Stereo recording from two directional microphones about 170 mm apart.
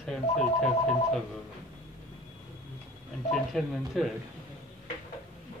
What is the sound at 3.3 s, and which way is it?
Speech, centre (ahead or behind).